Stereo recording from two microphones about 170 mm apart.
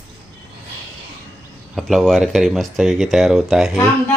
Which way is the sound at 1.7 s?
Centre (ahead or behind).